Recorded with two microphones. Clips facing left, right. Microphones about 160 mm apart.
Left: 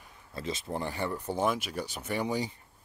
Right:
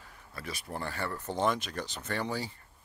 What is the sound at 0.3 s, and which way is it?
Speech, 25° left (ahead or behind).